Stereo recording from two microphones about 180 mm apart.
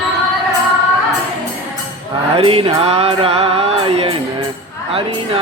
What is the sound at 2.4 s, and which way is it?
Music, 30° right (ahead or behind).